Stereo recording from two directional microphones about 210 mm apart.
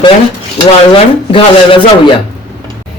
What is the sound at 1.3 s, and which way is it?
Speech, 25° left (ahead or behind).